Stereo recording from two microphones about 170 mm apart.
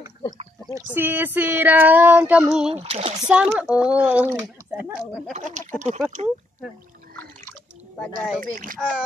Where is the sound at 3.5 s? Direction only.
5° right (ahead or behind).